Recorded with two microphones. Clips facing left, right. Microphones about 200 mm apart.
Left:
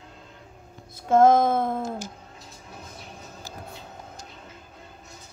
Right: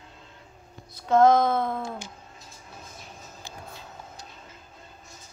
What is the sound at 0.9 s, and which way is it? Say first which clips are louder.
Music: left 1 dB; 50° left (ahead or behind).